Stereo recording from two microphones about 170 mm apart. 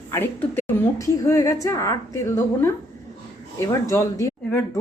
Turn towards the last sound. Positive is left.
turn(degrees=15)  # may be behind; listen again after turning